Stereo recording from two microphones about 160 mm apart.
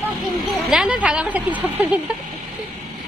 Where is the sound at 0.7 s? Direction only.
5° right (ahead or behind).